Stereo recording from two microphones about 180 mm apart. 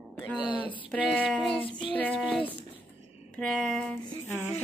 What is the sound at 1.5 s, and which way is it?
Child singing, 30° left (ahead or behind).